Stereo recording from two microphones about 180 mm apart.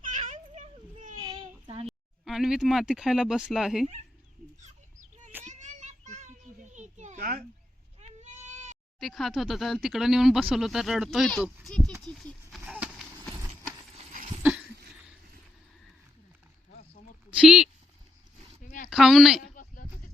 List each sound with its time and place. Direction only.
0.0 s children playing: 45° right (ahead or behind)
1.2 s child singing: 25° right (ahead or behind)
1.9 s speech: centre (ahead or behind)
4.6 s fowl: 40° right (ahead or behind)
5.5 s children playing: 40° right (ahead or behind)
8.0 s bleat: 40° right (ahead or behind)
9.0 s speech: centre (ahead or behind)
12.1 s a sound: centre (ahead or behind)
17.3 s speech: 5° right (ahead or behind)
18.9 s speech: centre (ahead or behind)
19.5 s a sound: 50° left (ahead or behind)